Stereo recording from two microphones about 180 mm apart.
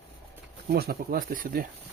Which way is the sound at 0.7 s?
60° right (ahead or behind).